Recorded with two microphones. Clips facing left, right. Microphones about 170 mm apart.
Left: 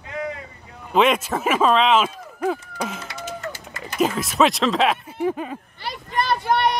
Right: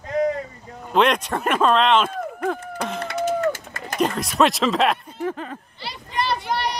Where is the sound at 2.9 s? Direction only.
60° right (ahead or behind).